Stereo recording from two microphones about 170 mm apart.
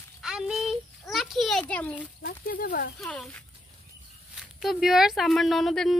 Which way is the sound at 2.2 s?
55° left (ahead or behind).